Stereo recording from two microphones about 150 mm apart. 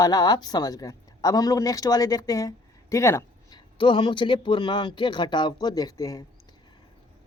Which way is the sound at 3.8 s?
30° left (ahead or behind).